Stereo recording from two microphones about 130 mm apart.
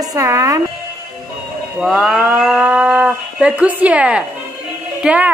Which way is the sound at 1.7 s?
Centre (ahead or behind).